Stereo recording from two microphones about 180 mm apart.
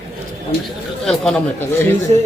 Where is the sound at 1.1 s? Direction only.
5° left (ahead or behind).